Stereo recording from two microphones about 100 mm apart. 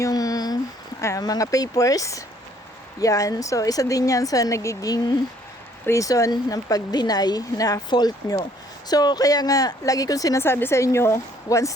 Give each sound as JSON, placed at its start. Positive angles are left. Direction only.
{"t": 0.0, "sound": "a sound", "side_deg": 35}
{"t": 1.0, "sound": "speech", "side_deg": 35}
{"t": 10.4, "sound": "speech", "side_deg": 25}